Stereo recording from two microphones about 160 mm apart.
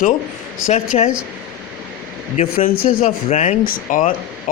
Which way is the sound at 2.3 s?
45° left (ahead or behind).